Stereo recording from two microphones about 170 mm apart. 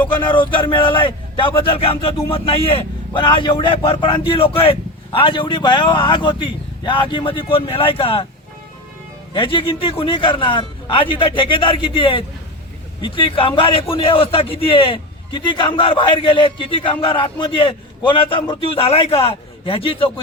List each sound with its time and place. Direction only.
0.3 s a man's voice: 30° left (ahead or behind)
9.3 s a man's voice: 30° left (ahead or behind)